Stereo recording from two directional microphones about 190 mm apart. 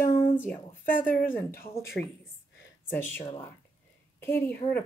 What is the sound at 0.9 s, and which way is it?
Speech, 45° left (ahead or behind).